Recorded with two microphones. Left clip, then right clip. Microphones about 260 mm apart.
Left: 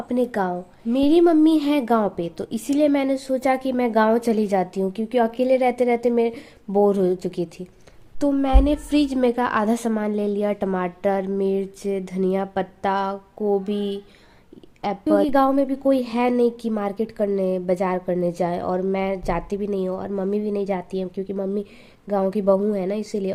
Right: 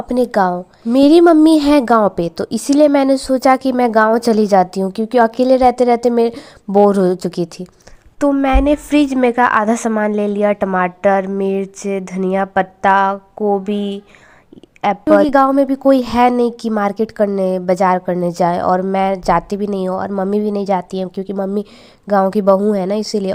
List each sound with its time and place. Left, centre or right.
0.1 s a woman's voice: right